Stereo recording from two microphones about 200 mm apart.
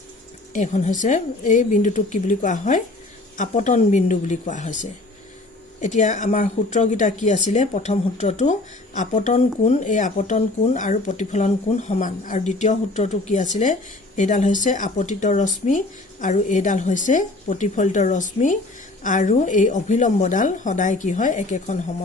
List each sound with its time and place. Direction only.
0.5 s speech: 35° left (ahead or behind)